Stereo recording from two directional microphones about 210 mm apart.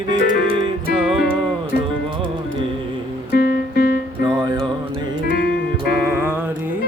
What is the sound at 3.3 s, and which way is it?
Music, 50° left (ahead or behind).